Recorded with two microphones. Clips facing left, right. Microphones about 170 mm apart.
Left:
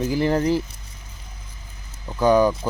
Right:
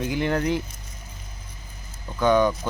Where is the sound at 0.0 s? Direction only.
35° left (ahead or behind).